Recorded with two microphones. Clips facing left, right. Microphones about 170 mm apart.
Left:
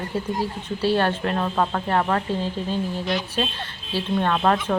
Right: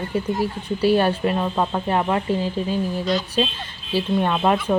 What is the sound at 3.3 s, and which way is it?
A woman's voice, 15° right (ahead or behind).